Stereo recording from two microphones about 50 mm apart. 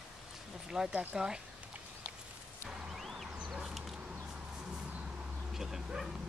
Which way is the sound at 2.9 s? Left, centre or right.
Centre.